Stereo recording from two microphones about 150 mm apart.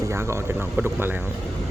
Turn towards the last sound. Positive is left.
turn(degrees=-15)  # may be behind; listen again after turning